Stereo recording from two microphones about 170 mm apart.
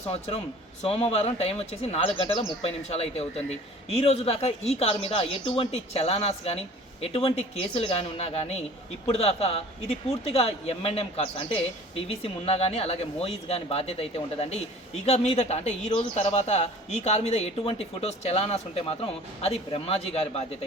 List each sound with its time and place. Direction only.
0.1 s a man's voice: 35° left (ahead or behind)